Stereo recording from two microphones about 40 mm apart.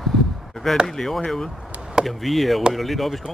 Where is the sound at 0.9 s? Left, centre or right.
Centre.